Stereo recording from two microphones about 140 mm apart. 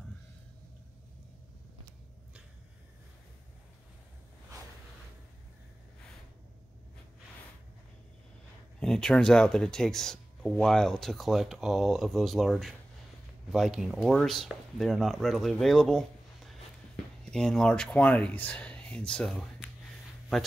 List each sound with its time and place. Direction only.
8.7 s speech: 5° left (ahead or behind)